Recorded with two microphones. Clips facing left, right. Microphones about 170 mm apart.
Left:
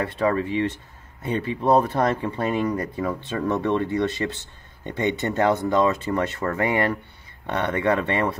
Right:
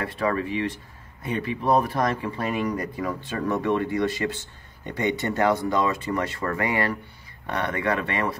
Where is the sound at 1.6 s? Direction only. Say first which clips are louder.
Left 3 dB; 25° left (ahead or behind).